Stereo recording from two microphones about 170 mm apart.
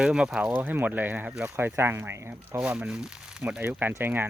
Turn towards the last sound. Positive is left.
turn(degrees=-10)  # may be behind; listen again after turning